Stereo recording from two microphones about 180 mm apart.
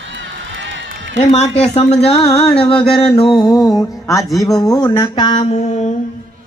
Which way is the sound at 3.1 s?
30° left (ahead or behind).